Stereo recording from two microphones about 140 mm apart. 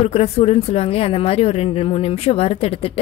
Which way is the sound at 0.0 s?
50° left (ahead or behind).